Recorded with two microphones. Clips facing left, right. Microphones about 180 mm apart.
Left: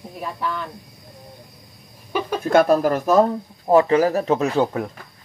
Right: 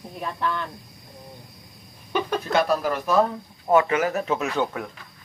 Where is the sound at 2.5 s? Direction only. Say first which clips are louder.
Left 7 dB; 50° left (ahead or behind).